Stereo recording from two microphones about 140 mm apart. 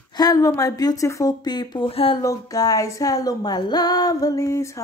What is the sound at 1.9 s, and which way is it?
Speech, 45° left (ahead or behind).